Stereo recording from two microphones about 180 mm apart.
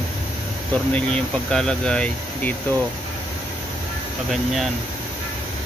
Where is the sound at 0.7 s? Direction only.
5° left (ahead or behind).